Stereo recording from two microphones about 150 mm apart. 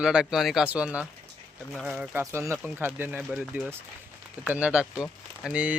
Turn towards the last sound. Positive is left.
turn(degrees=-10)  # may be behind; listen again after turning